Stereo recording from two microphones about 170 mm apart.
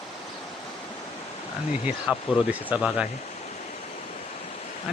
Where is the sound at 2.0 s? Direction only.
5° right (ahead or behind).